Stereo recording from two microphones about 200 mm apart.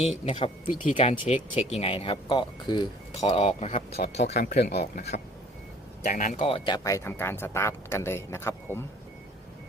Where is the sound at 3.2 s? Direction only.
30° left (ahead or behind).